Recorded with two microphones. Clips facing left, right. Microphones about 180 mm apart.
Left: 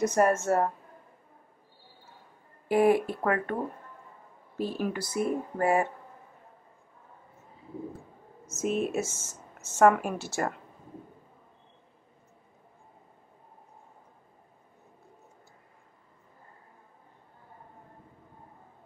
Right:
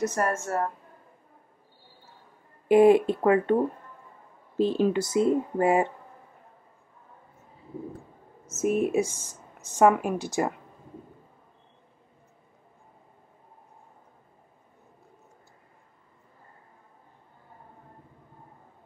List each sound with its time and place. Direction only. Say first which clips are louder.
0.0 s speech: left 3 dB; 15° left (ahead or behind)
2.7 s speech: right 6 dB; 20° right (ahead or behind)
4.6 s speech: right 8 dB; 25° right (ahead or behind)
8.6 s speech: right 5 dB; 15° right (ahead or behind)